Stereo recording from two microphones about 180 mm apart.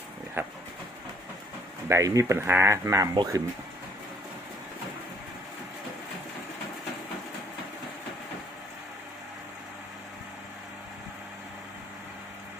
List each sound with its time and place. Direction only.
0.4 s speech: 10° right (ahead or behind)
1.9 s speech: 15° right (ahead or behind)